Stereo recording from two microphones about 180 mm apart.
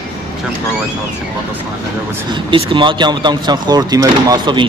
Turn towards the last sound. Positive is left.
turn(degrees=-25)  # may be behind; listen again after turning